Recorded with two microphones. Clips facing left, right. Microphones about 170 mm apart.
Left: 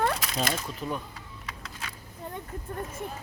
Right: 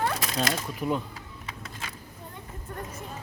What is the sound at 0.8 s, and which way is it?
Speech, 20° right (ahead or behind).